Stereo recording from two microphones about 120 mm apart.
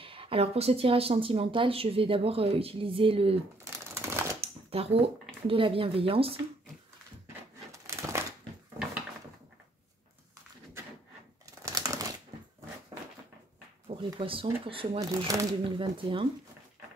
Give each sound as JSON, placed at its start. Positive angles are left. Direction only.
{"t": 0.0, "sound": "speech", "side_deg": -50}
{"t": 3.9, "sound": "typewriter", "side_deg": -20}
{"t": 4.4, "sound": "shuffling cards", "side_deg": -55}
{"t": 5.5, "sound": "speech", "side_deg": -50}
{"t": 7.7, "sound": "crumpling", "side_deg": -25}
{"t": 11.6, "sound": "typewriter", "side_deg": -30}
{"t": 13.9, "sound": "a sound", "side_deg": -55}
{"t": 14.2, "sound": "speech", "side_deg": -50}
{"t": 15.0, "sound": "speech", "side_deg": -30}
{"t": 15.8, "sound": "speech", "side_deg": -45}